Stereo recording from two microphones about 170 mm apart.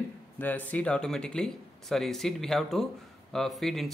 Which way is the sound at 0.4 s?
10° left (ahead or behind).